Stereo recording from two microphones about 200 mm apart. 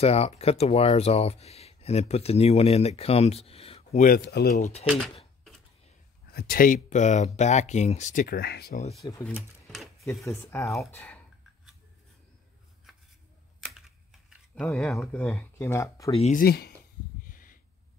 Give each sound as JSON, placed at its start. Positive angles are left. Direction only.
{"t": 0.0, "sound": "speech", "side_deg": 30}
{"t": 4.0, "sound": "speech", "side_deg": 50}
{"t": 6.3, "sound": "speech", "side_deg": 45}
{"t": 9.2, "sound": "speech", "side_deg": 5}
{"t": 10.0, "sound": "speech", "side_deg": 15}
{"t": 13.6, "sound": "computer keyboard", "side_deg": -5}
{"t": 14.5, "sound": "speech", "side_deg": 5}
{"t": 16.1, "sound": "speech", "side_deg": 30}
{"t": 16.3, "sound": "speech", "side_deg": 50}
{"t": 17.3, "sound": "a sound", "side_deg": 45}